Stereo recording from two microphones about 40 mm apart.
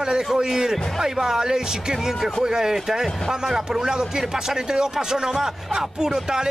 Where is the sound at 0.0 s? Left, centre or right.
Centre.